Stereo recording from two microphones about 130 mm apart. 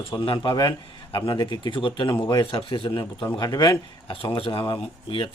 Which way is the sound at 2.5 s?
45° left (ahead or behind).